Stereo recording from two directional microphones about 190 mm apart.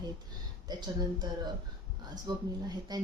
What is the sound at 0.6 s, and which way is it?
Speech, 20° right (ahead or behind).